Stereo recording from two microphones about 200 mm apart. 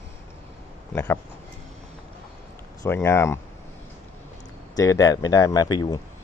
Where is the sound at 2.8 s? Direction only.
15° left (ahead or behind).